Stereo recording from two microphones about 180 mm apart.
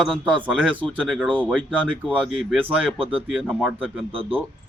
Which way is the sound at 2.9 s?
30° right (ahead or behind).